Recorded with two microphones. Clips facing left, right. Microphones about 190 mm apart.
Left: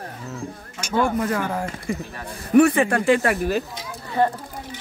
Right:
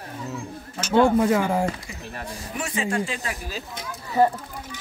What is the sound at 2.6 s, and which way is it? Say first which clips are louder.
Speech: left 11 dB; 60° left (ahead or behind).